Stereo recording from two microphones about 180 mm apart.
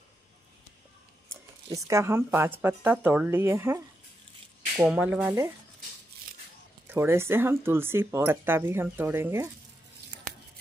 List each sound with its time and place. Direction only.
1.3 s speech: 15° right (ahead or behind)
4.8 s speech: 5° right (ahead or behind)
5.2 s speech: 20° right (ahead or behind)
6.9 s speech: 15° right (ahead or behind)